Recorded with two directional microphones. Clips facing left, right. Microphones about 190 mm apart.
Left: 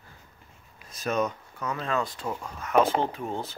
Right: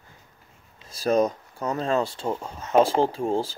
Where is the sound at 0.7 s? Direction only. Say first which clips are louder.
Right 6 dB; 30° right (ahead or behind).